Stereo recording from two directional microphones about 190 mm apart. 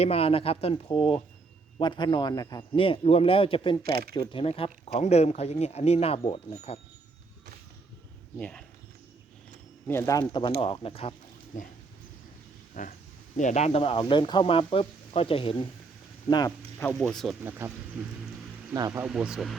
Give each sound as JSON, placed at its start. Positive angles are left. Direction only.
{"t": 0.0, "sound": "speech", "side_deg": 30}
{"t": 8.4, "sound": "speech", "side_deg": 5}
{"t": 9.8, "sound": "speech", "side_deg": 15}
{"t": 12.8, "sound": "speech", "side_deg": 45}
{"t": 16.9, "sound": "speech", "side_deg": 0}
{"t": 17.4, "sound": "speech", "side_deg": -10}
{"t": 18.7, "sound": "speech", "side_deg": -15}